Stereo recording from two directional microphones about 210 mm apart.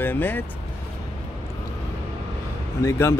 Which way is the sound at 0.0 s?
10° left (ahead or behind).